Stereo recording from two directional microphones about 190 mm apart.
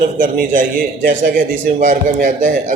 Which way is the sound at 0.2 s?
45° right (ahead or behind).